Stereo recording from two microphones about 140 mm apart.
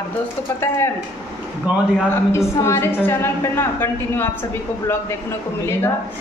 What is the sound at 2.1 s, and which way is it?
A woman's voice, 20° left (ahead or behind).